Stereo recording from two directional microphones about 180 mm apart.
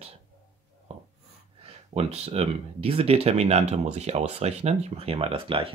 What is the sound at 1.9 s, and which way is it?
Speech, 35° right (ahead or behind).